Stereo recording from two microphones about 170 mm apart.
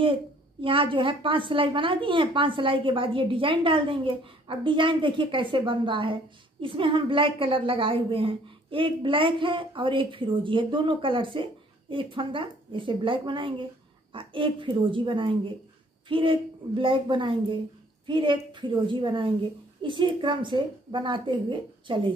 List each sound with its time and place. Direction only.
0.0 s a woman's voice: 30° right (ahead or behind)